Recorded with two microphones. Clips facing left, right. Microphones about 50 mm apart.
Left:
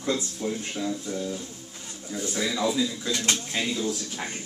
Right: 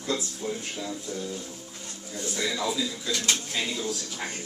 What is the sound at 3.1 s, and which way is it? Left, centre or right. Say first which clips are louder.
Speech: right 2 dB; left.